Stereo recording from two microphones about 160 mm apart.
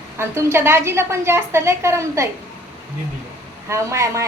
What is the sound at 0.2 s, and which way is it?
A woman's voice, 15° right (ahead or behind).